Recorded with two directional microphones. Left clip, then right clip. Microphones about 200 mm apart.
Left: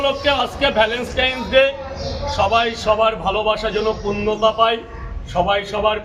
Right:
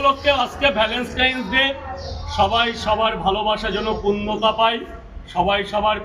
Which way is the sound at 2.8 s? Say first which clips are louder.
Left 2 dB; 25° left (ahead or behind).